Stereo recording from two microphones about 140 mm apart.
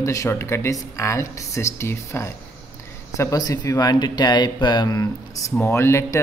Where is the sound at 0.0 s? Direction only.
20° left (ahead or behind).